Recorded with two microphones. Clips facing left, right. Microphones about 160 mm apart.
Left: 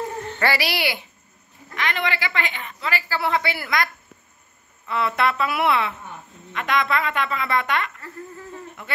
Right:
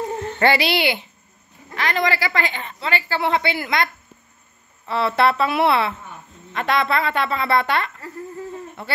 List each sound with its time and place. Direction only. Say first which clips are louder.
0.4 s a woman's voice: right 5 dB; 25° right (ahead or behind)
1.8 s a woman's voice: right 4 dB; 35° right (ahead or behind)